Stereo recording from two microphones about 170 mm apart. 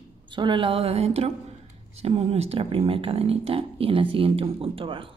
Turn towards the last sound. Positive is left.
turn(degrees=-30)  # may be behind; listen again after turning